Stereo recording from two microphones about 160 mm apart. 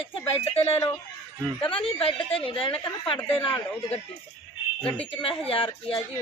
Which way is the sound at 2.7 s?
15° left (ahead or behind).